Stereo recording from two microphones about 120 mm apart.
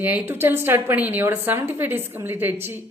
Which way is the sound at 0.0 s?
15° right (ahead or behind).